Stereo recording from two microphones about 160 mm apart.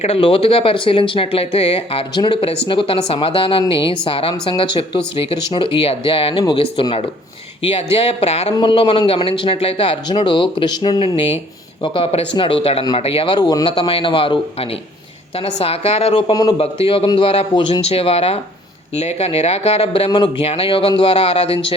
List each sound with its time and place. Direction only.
0.0 s speech: 35° left (ahead or behind)